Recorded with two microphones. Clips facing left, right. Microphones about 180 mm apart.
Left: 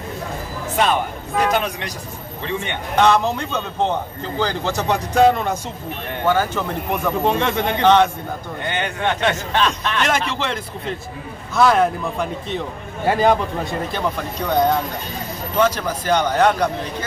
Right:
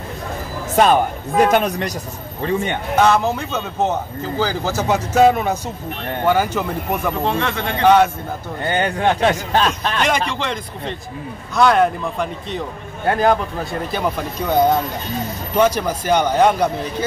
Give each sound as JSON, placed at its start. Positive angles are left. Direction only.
{"t": 0.7, "sound": "speech", "side_deg": -45}
{"t": 3.0, "sound": "a man's voice", "side_deg": -5}
{"t": 7.2, "sound": "a man's voice", "side_deg": 20}
{"t": 7.8, "sound": "speech", "side_deg": -10}
{"t": 8.6, "sound": "a man's voice", "side_deg": -40}
{"t": 10.0, "sound": "a man's voice", "side_deg": 5}
{"t": 15.5, "sound": "speech", "side_deg": -10}